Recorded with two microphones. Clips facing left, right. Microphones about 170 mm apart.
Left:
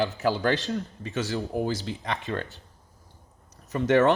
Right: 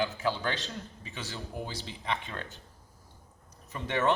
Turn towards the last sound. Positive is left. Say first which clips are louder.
# left 9 dB
turn(degrees=75)  # may be behind; listen again after turning